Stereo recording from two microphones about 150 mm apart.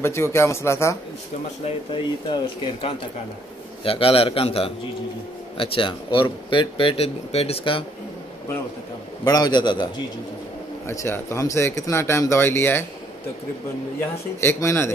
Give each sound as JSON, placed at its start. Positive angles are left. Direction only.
{"t": 0.0, "sound": "speech", "side_deg": 15}
{"t": 1.9, "sound": "speech", "side_deg": 30}
{"t": 9.2, "sound": "a man's voice", "side_deg": 25}
{"t": 10.9, "sound": "speech", "side_deg": 20}
{"t": 13.9, "sound": "speech", "side_deg": 15}